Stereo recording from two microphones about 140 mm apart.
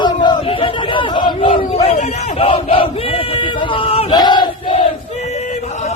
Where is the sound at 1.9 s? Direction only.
55° left (ahead or behind).